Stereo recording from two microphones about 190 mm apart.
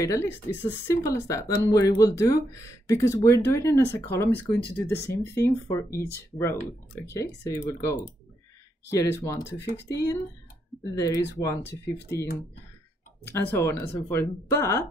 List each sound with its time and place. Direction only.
0.0 s speech: 15° left (ahead or behind)
8.9 s speech: 15° left (ahead or behind)
9.4 s speech: 65° left (ahead or behind)
10.8 s speech: 20° left (ahead or behind)
13.3 s speech: 10° left (ahead or behind)